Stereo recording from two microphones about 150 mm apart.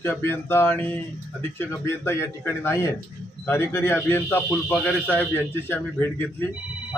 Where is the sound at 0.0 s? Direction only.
15° left (ahead or behind).